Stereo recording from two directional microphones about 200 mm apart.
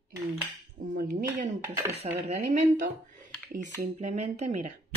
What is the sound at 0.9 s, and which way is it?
Speech, 40° right (ahead or behind).